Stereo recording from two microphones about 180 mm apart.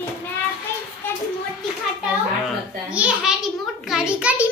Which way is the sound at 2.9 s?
5° right (ahead or behind).